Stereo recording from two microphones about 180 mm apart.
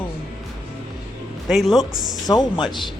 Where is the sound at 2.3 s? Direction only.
25° left (ahead or behind).